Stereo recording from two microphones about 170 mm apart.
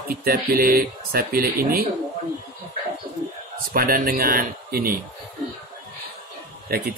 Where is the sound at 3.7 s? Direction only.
55° right (ahead or behind).